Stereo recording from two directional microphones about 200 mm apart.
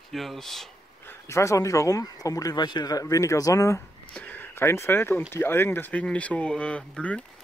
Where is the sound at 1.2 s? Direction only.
15° left (ahead or behind).